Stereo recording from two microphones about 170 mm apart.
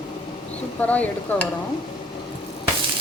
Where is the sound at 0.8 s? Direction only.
10° left (ahead or behind).